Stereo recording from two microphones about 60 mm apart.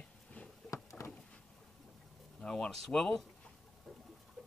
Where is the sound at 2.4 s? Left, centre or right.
Centre.